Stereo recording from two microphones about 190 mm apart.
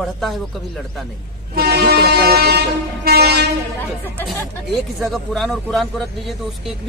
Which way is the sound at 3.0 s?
55° right (ahead or behind).